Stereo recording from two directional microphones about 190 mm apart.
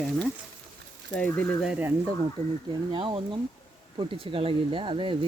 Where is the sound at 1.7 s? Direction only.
10° right (ahead or behind).